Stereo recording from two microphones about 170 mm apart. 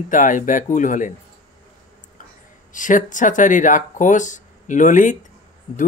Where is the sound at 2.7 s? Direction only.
50° left (ahead or behind).